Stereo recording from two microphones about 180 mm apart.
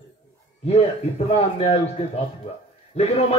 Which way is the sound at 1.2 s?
35° left (ahead or behind).